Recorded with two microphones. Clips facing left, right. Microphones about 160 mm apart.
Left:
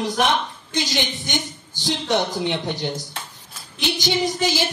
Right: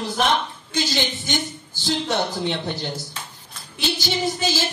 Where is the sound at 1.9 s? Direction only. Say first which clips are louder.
Left 1 dB; 15° left (ahead or behind).